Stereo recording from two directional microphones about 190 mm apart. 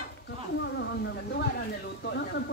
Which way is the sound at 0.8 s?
70° left (ahead or behind).